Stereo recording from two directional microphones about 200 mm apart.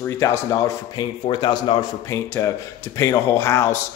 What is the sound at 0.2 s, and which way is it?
A man's voice, 15° left (ahead or behind).